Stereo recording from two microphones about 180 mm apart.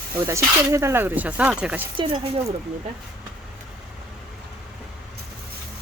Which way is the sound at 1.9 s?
30° right (ahead or behind).